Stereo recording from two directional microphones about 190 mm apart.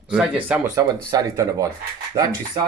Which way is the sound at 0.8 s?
15° right (ahead or behind).